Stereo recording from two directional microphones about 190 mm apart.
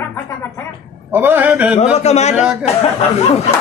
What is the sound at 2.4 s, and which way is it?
Speech, 5° right (ahead or behind).